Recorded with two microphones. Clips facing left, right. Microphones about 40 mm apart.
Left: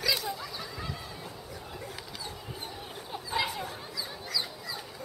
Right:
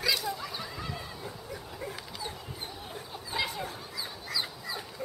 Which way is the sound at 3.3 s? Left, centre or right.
Centre.